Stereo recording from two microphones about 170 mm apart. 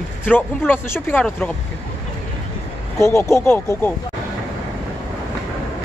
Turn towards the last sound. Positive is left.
turn(degrees=15)  # may be behind; listen again after turning